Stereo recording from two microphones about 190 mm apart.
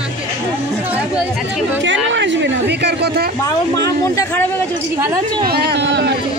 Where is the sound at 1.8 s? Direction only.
75° right (ahead or behind); by 3.3 s 60° right (ahead or behind).